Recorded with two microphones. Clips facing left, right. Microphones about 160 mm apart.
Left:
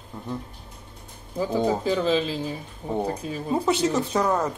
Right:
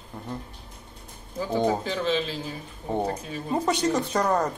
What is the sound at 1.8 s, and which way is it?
Speech, 35° left (ahead or behind).